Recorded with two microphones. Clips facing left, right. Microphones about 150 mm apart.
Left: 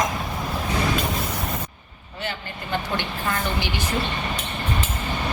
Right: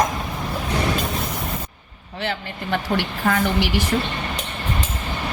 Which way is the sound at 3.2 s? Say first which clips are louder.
Right 8 dB; 60° right (ahead or behind).